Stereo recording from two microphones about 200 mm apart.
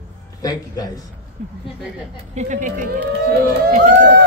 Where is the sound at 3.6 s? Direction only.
50° right (ahead or behind).